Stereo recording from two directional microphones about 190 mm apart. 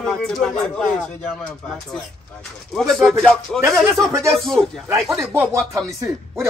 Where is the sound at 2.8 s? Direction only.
Centre (ahead or behind).